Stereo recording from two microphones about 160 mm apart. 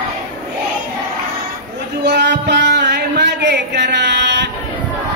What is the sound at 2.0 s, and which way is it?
Music, 90° right.